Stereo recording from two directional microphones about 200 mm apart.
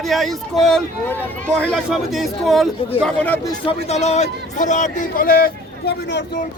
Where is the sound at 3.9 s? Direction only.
35° left (ahead or behind); by 6.2 s 60° left (ahead or behind).